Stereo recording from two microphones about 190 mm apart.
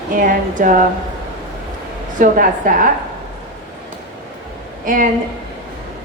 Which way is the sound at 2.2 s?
45° right (ahead or behind).